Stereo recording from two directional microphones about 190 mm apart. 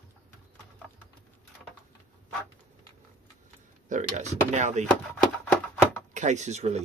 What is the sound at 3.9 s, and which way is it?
Speech, 40° right (ahead or behind).